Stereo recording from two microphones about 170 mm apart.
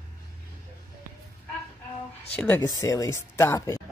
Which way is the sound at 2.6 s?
20° left (ahead or behind).